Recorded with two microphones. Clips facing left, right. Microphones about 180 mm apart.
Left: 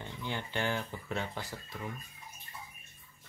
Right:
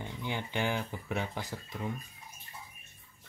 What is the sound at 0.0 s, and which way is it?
Speech, 15° right (ahead or behind).